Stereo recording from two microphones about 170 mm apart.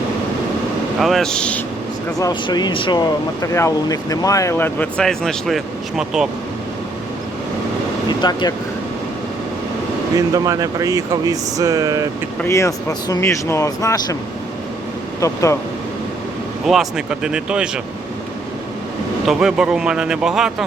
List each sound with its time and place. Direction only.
0.9 s speech: centre (ahead or behind)
2.1 s speech: 20° left (ahead or behind); by 6.2 s centre (ahead or behind)
8.0 s vehicle: 25° left (ahead or behind)
10.2 s speech: 20° right (ahead or behind)
12.4 s speech: 15° left (ahead or behind)
15.2 s speech: 20° left (ahead or behind)
16.6 s speech: 5° right (ahead or behind)
19.3 s speech: 5° right (ahead or behind)